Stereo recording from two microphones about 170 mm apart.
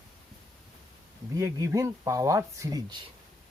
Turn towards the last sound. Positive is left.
turn(degrees=-25)  # may be behind; listen again after turning